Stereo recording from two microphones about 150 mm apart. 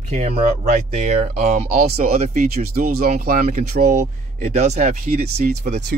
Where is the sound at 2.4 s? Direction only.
80° right.